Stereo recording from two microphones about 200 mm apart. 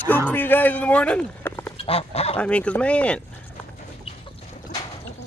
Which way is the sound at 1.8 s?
30° left (ahead or behind).